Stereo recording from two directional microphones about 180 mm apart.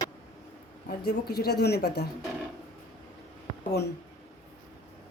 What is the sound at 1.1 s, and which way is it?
Speech, 65° left (ahead or behind).